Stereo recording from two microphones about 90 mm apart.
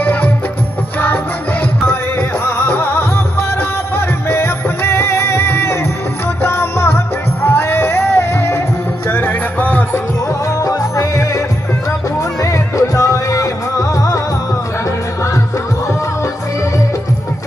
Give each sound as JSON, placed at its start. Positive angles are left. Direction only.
{"t": 0.0, "sound": "music", "side_deg": 20}
{"t": 1.9, "sound": "music", "side_deg": 25}
{"t": 10.6, "sound": "music", "side_deg": 35}
{"t": 12.4, "sound": "music", "side_deg": 35}